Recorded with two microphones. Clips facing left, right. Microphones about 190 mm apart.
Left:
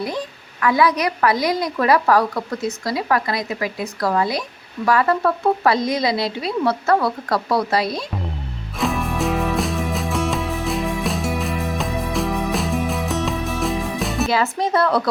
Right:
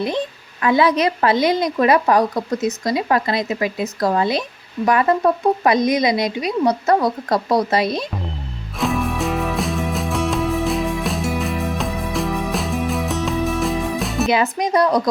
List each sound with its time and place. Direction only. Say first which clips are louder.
0.6 s a woman's voice: right 2 dB; 25° right (ahead or behind)
8.8 s music: right 1 dB; centre (ahead or behind)
14.3 s a woman's voice: right 3 dB; 15° right (ahead or behind)